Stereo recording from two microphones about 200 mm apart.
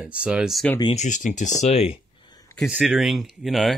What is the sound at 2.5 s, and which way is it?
Speech, centre (ahead or behind).